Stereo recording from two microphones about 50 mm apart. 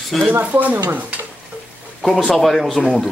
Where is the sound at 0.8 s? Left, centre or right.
Right.